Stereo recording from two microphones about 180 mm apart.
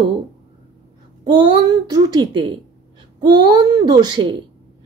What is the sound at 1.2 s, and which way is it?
A woman's voice, 30° right (ahead or behind).